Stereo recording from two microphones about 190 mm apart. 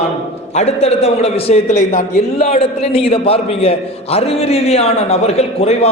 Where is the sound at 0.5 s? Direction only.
35° left (ahead or behind).